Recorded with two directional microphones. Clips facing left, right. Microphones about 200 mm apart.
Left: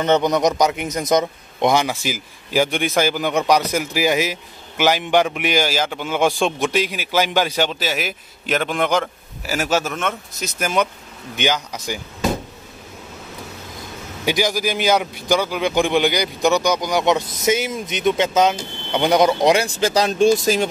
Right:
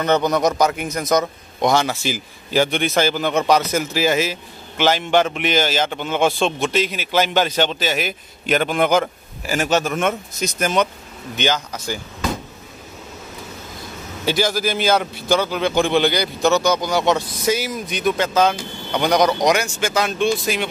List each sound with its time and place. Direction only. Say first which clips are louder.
0.0 s a man's voice: left 1 dB; 20° left (ahead or behind); by 9.6 s 5° right (ahead or behind)
9.6 s a man's voice: right 2 dB; 5° left (ahead or behind)
14.2 s a man's voice: even; 15° left (ahead or behind); by 20.6 s 40° left (ahead or behind)